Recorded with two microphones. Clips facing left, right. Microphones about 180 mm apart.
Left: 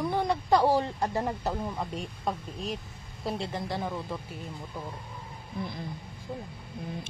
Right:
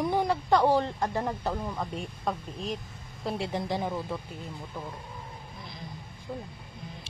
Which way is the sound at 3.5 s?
20° right (ahead or behind).